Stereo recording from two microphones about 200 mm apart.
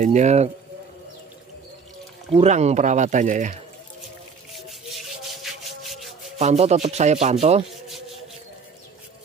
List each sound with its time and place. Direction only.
0.0 s speech: 35° right (ahead or behind)
2.3 s speech: 35° right (ahead or behind)
4.6 s rub: centre (ahead or behind)
6.3 s speech: 30° right (ahead or behind)